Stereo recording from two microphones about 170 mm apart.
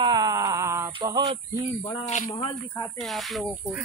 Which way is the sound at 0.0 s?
25° right (ahead or behind).